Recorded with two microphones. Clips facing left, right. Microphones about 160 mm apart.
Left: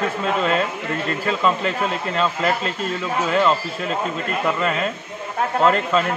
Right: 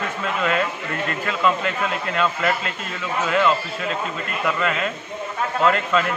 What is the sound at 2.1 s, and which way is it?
A man's voice, 30° left (ahead or behind).